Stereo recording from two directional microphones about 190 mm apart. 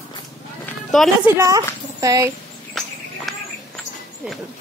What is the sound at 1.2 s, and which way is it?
A woman's voice, 15° right (ahead or behind).